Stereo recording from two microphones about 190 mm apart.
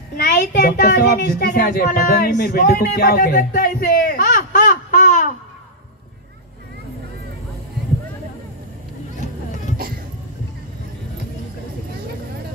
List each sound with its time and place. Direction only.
0.2 s speech: 55° left (ahead or behind)